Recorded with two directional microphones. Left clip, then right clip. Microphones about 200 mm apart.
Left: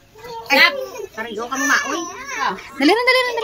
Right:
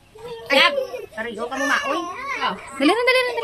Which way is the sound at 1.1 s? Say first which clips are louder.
Left 2 dB; centre (ahead or behind).